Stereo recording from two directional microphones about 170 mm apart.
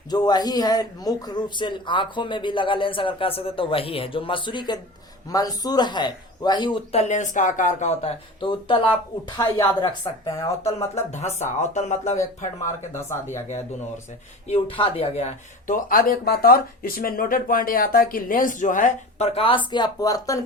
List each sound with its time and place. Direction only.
0.1 s speech: 25° left (ahead or behind)
7.0 s speech: 45° left (ahead or behind); by 10.5 s 20° left (ahead or behind)
11.1 s speech: 40° left (ahead or behind)
12.9 s speech: 15° left (ahead or behind)
14.5 s speech: 35° left (ahead or behind); by 19.3 s 50° left (ahead or behind)
19.3 s speech: 30° left (ahead or behind)